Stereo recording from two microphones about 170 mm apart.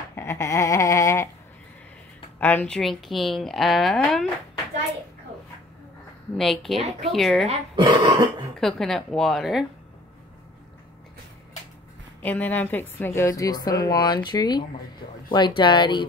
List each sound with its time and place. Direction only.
0.1 s a sound: 15° left (ahead or behind)
2.4 s a woman's voice: 5° left (ahead or behind)
6.3 s a woman's voice: centre (ahead or behind)
7.4 s speech: 30° right (ahead or behind)
8.5 s a woman's voice: centre (ahead or behind)
12.2 s a woman's voice: 10° left (ahead or behind); by 16.1 s 25° left (ahead or behind)